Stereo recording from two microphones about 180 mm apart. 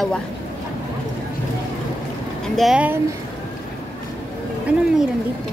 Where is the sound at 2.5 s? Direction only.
5° right (ahead or behind).